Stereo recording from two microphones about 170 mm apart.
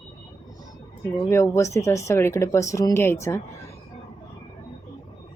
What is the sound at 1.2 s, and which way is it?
A woman's voice, 15° left (ahead or behind).